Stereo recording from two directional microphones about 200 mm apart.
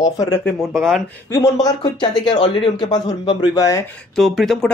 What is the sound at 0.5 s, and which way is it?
Speech, centre (ahead or behind).